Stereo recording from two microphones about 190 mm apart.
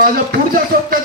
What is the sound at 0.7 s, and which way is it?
Speech, 55° right (ahead or behind).